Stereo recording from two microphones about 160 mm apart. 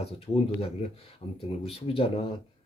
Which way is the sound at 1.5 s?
35° left (ahead or behind).